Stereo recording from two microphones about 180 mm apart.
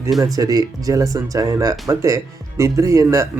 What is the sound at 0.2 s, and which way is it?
Speech, 20° right (ahead or behind).